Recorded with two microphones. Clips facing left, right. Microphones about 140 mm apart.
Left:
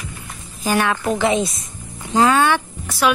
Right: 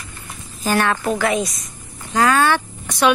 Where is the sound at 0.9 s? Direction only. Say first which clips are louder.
Even; 10° right (ahead or behind).